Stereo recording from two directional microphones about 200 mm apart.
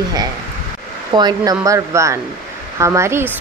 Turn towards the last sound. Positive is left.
turn(degrees=-15)  # may be behind; listen again after turning